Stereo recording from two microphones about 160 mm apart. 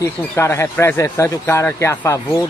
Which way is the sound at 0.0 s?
15° left (ahead or behind).